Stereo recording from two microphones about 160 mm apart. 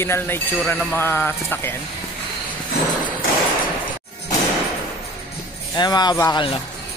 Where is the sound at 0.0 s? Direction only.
15° left (ahead or behind).